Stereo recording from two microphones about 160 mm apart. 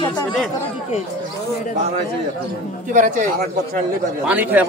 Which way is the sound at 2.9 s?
55° right (ahead or behind).